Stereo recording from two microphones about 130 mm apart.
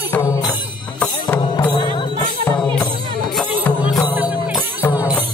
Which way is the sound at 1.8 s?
35° left (ahead or behind).